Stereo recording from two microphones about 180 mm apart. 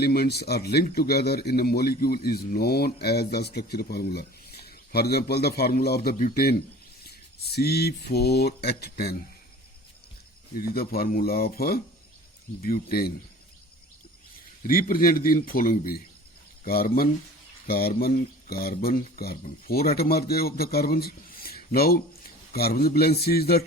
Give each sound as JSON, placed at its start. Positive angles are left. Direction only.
{"t": 0.0, "sound": "a man's voice", "side_deg": 60}
{"t": 10.5, "sound": "a man's voice", "side_deg": 55}
{"t": 14.7, "sound": "a man's voice", "side_deg": 55}